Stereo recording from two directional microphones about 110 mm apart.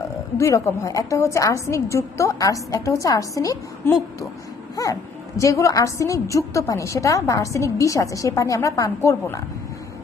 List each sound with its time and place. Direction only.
0.4 s a woman's voice: 25° left (ahead or behind)